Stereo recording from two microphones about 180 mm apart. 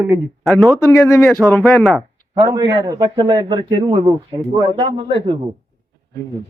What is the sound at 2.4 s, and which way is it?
A man's voice, 20° right (ahead or behind).